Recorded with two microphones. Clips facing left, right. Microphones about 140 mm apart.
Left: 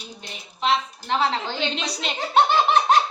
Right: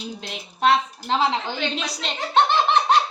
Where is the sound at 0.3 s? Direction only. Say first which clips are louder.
Right 3 dB; 60° right (ahead or behind).